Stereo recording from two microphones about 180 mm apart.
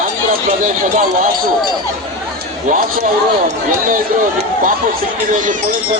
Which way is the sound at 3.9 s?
50° right (ahead or behind).